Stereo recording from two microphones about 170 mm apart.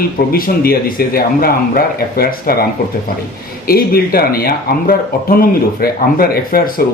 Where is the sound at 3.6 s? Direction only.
60° left (ahead or behind).